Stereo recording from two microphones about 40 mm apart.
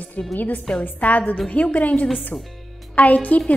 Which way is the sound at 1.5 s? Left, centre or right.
Left.